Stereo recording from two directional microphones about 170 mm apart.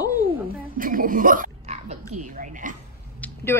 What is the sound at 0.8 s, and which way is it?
Speech, 55° right (ahead or behind).